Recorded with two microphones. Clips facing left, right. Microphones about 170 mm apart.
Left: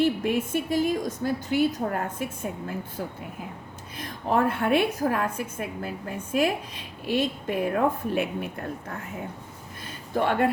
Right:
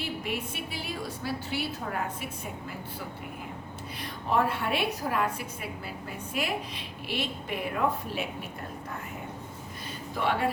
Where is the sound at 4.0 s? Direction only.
50° left (ahead or behind).